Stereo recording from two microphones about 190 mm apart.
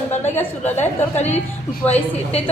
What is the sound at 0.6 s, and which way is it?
A woman's voice, 35° left (ahead or behind).